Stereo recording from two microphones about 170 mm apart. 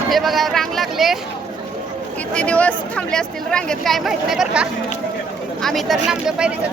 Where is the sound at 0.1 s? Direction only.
Centre (ahead or behind).